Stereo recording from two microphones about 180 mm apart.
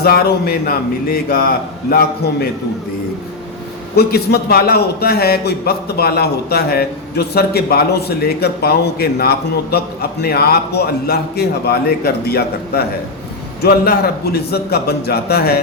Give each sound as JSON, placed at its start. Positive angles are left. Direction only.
{"t": 0.0, "sound": "a man's voice", "side_deg": 60}
{"t": 3.9, "sound": "a man's voice", "side_deg": 60}